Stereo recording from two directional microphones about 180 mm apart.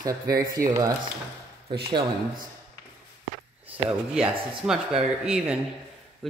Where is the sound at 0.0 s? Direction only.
20° right (ahead or behind).